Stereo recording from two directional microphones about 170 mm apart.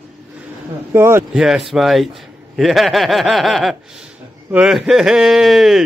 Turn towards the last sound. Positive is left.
turn(degrees=0)  # may be behind; listen again after turning